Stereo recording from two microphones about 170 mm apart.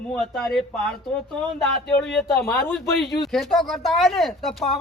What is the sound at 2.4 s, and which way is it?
Speech, 10° left (ahead or behind).